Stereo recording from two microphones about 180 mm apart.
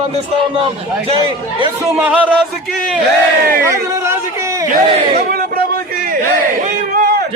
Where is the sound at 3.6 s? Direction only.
15° right (ahead or behind).